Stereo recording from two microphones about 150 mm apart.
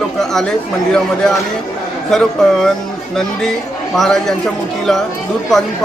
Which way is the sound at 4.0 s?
Centre (ahead or behind).